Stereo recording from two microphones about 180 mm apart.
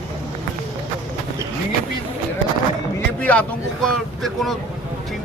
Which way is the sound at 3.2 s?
5° left (ahead or behind).